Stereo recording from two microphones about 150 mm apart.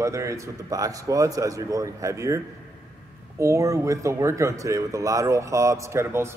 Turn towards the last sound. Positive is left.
turn(degrees=-15)  # may be behind; listen again after turning